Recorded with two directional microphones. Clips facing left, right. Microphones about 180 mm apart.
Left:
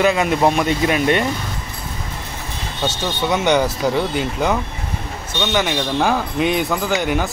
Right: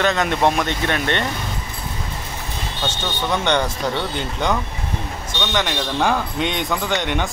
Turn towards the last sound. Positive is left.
turn(degrees=5)  # may be behind; listen again after turning